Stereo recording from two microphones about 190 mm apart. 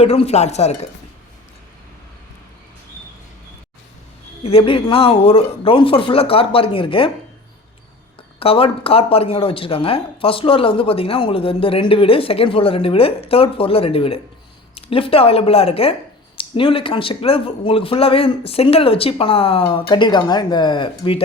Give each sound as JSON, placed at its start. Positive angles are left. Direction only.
{"t": 0.0, "sound": "speech", "side_deg": 35}
{"t": 4.4, "sound": "speech", "side_deg": 30}
{"t": 8.4, "sound": "speech", "side_deg": 30}